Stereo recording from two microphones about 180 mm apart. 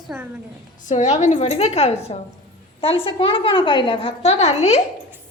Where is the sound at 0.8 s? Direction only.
40° left (ahead or behind).